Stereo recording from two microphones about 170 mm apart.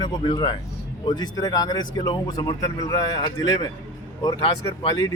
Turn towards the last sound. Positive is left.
turn(degrees=25)  # may be behind; listen again after turning